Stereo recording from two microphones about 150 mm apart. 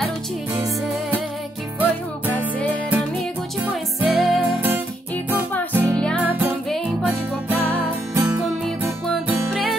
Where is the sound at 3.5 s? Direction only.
Centre (ahead or behind).